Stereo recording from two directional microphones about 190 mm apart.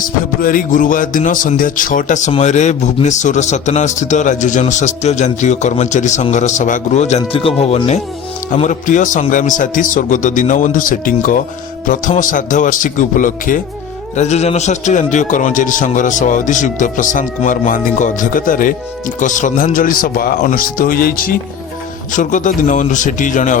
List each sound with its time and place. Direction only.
0.4 s a man's voice: 45° left (ahead or behind)